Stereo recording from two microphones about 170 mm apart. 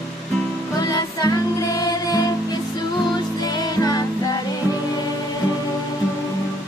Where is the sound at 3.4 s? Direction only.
20° left (ahead or behind).